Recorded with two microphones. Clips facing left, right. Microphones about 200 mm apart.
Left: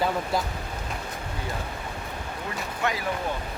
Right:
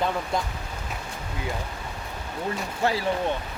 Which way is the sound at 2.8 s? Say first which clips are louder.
Right 4 dB; 30° right (ahead or behind).